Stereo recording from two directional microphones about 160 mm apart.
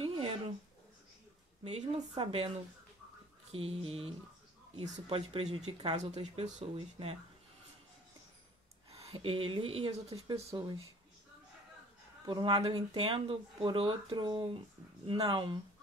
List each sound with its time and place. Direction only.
0.0 s a sound: 35° right (ahead or behind)
1.6 s speech: 40° right (ahead or behind)
3.5 s speech: 40° right (ahead or behind)
8.9 s speech: 40° right (ahead or behind)
10.5 s speech: 25° right (ahead or behind)
12.3 s speech: 30° right (ahead or behind)